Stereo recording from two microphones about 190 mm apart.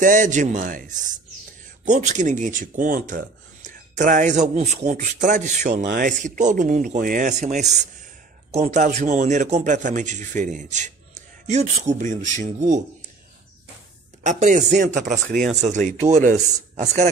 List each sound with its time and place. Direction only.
0.0 s speech: 40° right (ahead or behind)
14.2 s speech: 40° right (ahead or behind)